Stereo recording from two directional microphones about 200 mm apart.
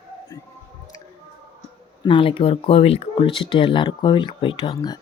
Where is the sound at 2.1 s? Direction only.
25° left (ahead or behind).